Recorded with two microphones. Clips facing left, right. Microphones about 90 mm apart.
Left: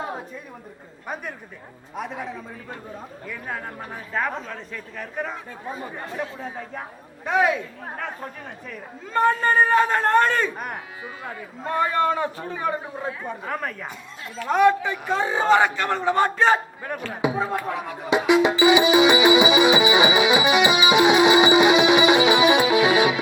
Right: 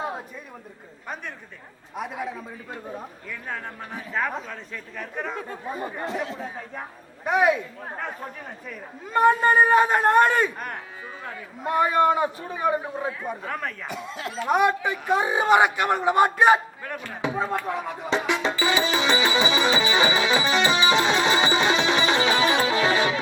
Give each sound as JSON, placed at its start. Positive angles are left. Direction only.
{"t": 1.0, "sound": "speech", "side_deg": 10}
{"t": 2.0, "sound": "a man's voice", "side_deg": -5}
{"t": 4.1, "sound": "a man's voice", "side_deg": 0}
{"t": 6.1, "sound": "speech", "side_deg": -90}
{"t": 7.3, "sound": "a man's voice", "side_deg": -15}
{"t": 9.1, "sound": "a man's voice", "side_deg": -15}
{"t": 10.6, "sound": "speech", "side_deg": 5}
{"t": 11.6, "sound": "a man's voice", "side_deg": -15}
{"t": 13.4, "sound": "a man's voice", "side_deg": 5}
{"t": 13.9, "sound": "speech", "side_deg": -90}
{"t": 14.3, "sound": "a man's voice", "side_deg": -15}
{"t": 17.1, "sound": "speech", "side_deg": 10}
{"t": 18.1, "sound": "music", "side_deg": 10}